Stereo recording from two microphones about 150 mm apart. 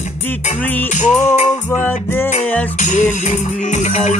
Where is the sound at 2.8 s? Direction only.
50° left (ahead or behind).